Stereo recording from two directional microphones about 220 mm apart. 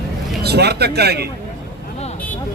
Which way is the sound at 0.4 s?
45° right (ahead or behind).